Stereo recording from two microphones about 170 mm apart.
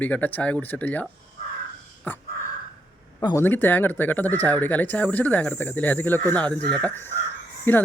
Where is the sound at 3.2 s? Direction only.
15° left (ahead or behind).